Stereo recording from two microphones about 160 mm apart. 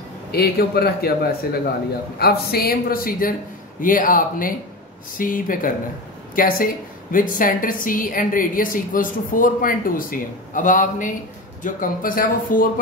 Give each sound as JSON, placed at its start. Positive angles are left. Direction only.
{"t": 0.3, "sound": "a man's voice", "side_deg": 75}